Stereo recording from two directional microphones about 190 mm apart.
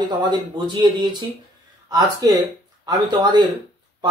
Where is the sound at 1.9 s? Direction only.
20° right (ahead or behind).